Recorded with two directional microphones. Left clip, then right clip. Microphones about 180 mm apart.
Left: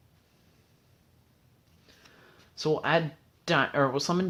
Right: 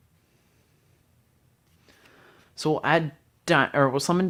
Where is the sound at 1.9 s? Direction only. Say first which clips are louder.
Right 2 dB; 50° right (ahead or behind).